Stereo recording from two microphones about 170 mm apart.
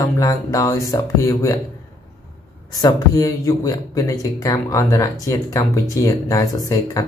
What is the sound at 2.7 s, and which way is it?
Speech, 25° left (ahead or behind).